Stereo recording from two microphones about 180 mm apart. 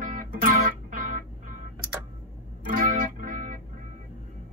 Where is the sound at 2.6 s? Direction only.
45° right (ahead or behind).